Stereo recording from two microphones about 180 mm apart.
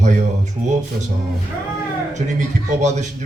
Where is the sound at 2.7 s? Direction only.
40° right (ahead or behind).